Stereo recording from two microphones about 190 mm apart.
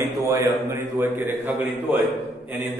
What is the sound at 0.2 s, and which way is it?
A man's voice, 15° right (ahead or behind).